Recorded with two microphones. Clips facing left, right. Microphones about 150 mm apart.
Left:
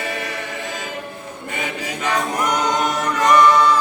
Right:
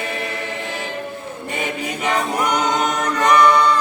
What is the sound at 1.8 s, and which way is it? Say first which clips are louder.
Choir: right 1 dB; 20° right (ahead or behind).